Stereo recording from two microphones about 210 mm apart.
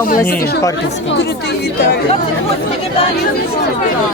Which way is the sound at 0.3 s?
45° left (ahead or behind).